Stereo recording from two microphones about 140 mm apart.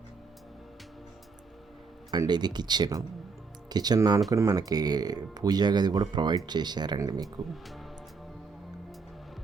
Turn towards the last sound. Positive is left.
turn(degrees=0)  # may be behind; listen again after turning